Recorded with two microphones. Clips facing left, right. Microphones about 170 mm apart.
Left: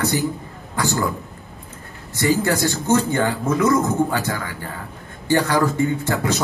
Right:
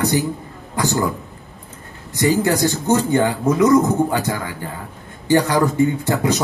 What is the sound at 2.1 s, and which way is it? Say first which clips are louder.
A man's voice: right 2 dB; 15° right (ahead or behind).